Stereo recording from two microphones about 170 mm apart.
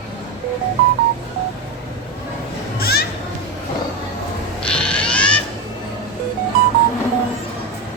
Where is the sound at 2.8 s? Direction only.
65° left (ahead or behind).